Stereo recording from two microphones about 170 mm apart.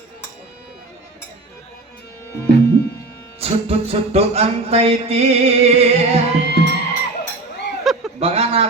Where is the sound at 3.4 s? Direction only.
35° right (ahead or behind).